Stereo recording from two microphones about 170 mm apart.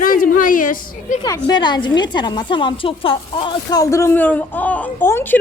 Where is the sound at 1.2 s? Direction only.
25° left (ahead or behind).